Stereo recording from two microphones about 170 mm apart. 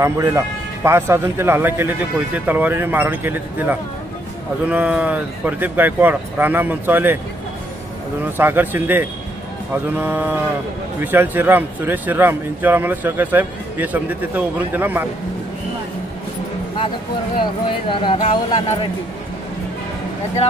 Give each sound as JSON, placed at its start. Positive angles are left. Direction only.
{"t": 0.0, "sound": "a man's voice", "side_deg": -20}
{"t": 8.4, "sound": "speech", "side_deg": -10}
{"t": 17.8, "sound": "speech", "side_deg": 30}